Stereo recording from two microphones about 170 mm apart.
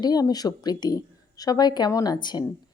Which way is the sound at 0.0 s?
25° left (ahead or behind).